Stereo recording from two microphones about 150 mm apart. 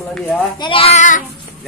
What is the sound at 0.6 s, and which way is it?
Speech, 35° left (ahead or behind).